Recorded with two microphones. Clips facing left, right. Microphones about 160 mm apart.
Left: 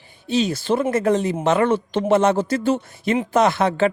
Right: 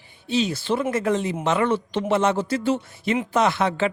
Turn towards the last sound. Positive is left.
turn(degrees=45)  # may be behind; listen again after turning